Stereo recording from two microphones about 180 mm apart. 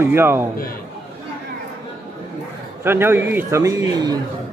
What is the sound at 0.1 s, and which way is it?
Speech, 10° right (ahead or behind).